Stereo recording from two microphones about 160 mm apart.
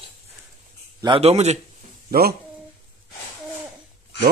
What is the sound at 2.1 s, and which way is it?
Speech, 70° right (ahead or behind).